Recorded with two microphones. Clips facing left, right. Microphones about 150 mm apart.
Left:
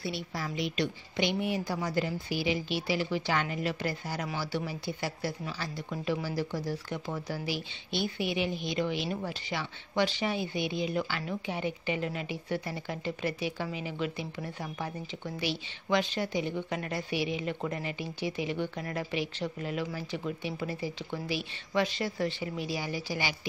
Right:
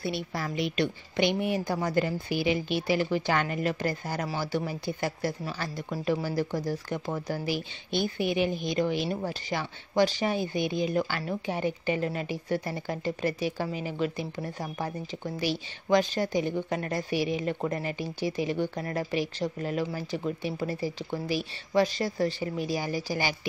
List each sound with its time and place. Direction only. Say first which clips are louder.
0.0 s speech: right 4 dB; 55° right (ahead or behind)